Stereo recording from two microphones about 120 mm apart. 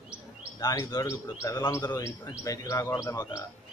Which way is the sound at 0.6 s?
30° left (ahead or behind).